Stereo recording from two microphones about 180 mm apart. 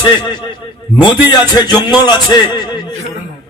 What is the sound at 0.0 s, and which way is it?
A man's voice, 25° left (ahead or behind).